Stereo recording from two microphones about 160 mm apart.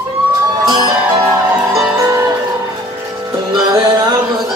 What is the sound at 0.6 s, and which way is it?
Music, 25° right (ahead or behind).